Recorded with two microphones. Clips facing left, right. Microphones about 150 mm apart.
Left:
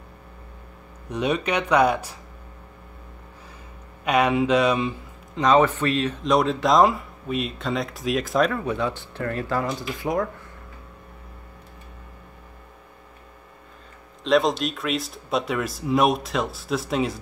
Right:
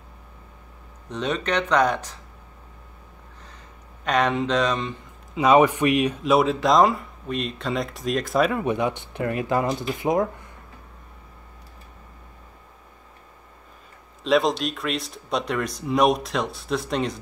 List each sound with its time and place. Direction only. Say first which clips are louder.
1.0 s speech: left 2 dB; 10° left (ahead or behind)
4.0 s speech: left 2 dB; 10° left (ahead or behind)
5.3 s speech: right 2 dB; 10° right (ahead or behind)
8.5 s speech: right 2 dB; 15° right (ahead or behind)
14.2 s speech: even; centre (ahead or behind)